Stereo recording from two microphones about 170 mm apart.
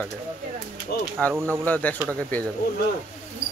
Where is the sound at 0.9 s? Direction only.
70° left (ahead or behind).